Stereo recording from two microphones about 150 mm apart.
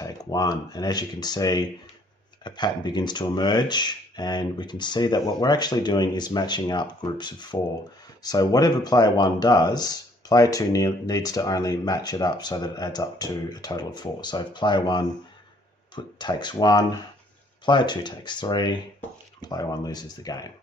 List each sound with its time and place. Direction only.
0.0 s speech: 25° left (ahead or behind)